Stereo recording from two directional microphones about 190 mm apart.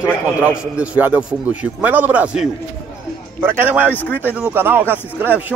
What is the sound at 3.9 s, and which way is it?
Speech, 10° left (ahead or behind).